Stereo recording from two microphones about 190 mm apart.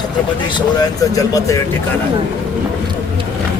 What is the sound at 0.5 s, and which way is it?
Speech, 20° left (ahead or behind).